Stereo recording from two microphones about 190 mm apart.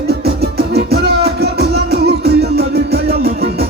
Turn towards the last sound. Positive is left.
turn(degrees=-60)  # may be behind; listen again after turning